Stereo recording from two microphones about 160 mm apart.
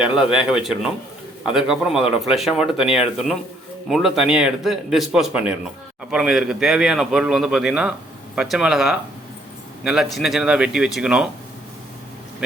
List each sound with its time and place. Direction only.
0.0 s speech: 5° right (ahead or behind)